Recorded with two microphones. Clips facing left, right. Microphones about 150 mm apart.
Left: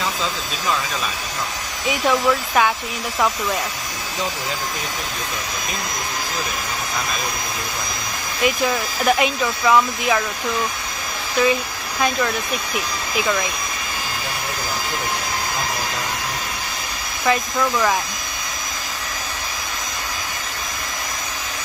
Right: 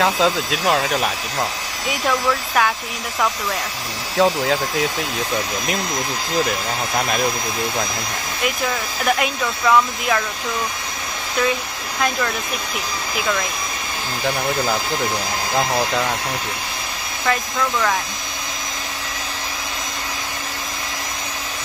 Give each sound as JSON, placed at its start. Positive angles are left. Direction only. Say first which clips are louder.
{"t": 0.0, "sound": "speech", "louder": "right 7 dB", "side_deg": -75}
{"t": 1.9, "sound": "speech", "louder": "left 2 dB", "side_deg": 0}
{"t": 9.0, "sound": "speech", "louder": "left 2 dB", "side_deg": 0}
{"t": 11.4, "sound": "speech", "louder": "left 3 dB", "side_deg": 5}
{"t": 17.3, "sound": "speech", "louder": "left 2 dB", "side_deg": 5}